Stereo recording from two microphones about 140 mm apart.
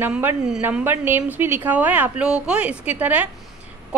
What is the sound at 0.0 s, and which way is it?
A woman's voice, 15° right (ahead or behind).